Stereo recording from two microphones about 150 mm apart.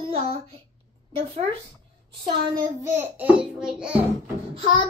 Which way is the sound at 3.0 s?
10° right (ahead or behind).